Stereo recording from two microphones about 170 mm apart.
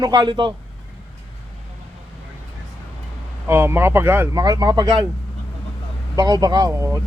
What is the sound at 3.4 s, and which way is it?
Speech, 15° right (ahead or behind).